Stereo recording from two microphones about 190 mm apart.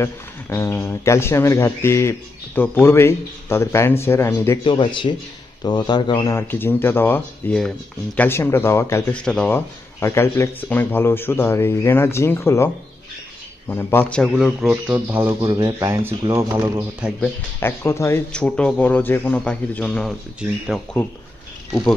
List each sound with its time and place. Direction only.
0.0 s speech: 15° left (ahead or behind)
4.6 s a man's voice: 25° left (ahead or behind); by 16.8 s 20° right (ahead or behind)
17.2 s speech: 10° left (ahead or behind)